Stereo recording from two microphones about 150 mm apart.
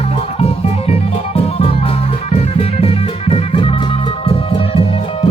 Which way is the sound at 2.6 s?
40° left (ahead or behind).